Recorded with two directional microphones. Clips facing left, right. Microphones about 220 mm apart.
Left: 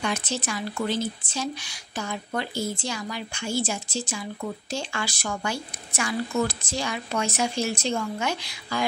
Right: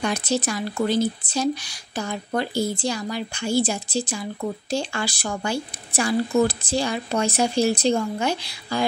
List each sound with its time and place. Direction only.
0.0 s speech: 40° right (ahead or behind)